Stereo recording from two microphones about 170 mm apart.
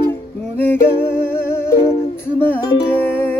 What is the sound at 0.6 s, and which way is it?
Humming, 10° left (ahead or behind).